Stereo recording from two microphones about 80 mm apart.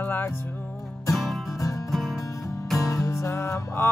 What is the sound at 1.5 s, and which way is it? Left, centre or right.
Music, left.